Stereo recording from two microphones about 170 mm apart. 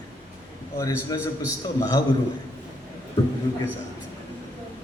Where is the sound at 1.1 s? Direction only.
20° left (ahead or behind).